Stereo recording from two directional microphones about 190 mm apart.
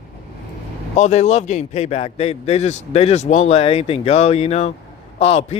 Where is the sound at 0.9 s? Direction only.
35° left (ahead or behind).